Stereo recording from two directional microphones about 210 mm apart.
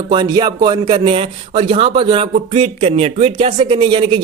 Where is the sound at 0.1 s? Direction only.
20° right (ahead or behind).